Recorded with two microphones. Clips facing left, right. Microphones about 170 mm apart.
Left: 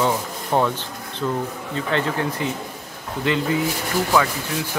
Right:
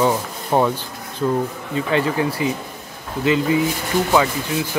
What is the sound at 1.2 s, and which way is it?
Speech, 20° right (ahead or behind).